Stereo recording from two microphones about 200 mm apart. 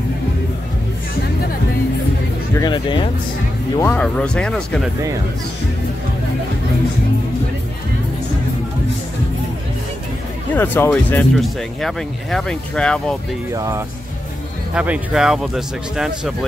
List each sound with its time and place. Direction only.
2.5 s speech: 20° left (ahead or behind)
3.7 s speech: 10° left (ahead or behind)
10.5 s speech: 10° left (ahead or behind)
13.5 s speech: 15° right (ahead or behind)